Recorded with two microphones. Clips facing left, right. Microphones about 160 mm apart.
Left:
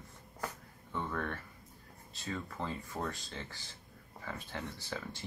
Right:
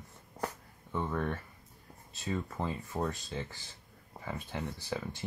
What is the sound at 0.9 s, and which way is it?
Speech, 15° right (ahead or behind).